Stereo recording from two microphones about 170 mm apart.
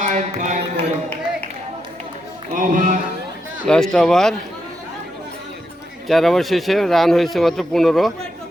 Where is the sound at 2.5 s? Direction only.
50° right (ahead or behind).